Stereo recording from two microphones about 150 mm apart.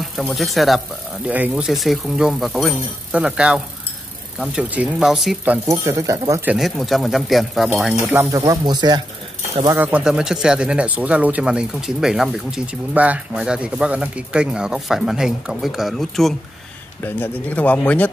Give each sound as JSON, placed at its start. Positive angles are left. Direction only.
{"t": 0.0, "sound": "speech", "side_deg": 0}
{"t": 5.7, "sound": "speech", "side_deg": -20}
{"t": 6.4, "sound": "speech", "side_deg": -5}
{"t": 8.3, "sound": "speech", "side_deg": -25}
{"t": 9.8, "sound": "speech", "side_deg": -10}
{"t": 17.0, "sound": "speech", "side_deg": 10}